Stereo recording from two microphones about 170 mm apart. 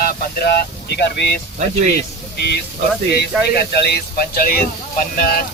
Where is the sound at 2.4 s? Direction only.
75° left (ahead or behind).